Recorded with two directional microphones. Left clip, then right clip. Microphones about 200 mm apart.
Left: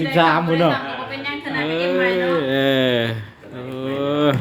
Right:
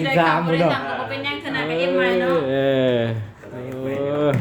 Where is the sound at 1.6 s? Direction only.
10° left (ahead or behind).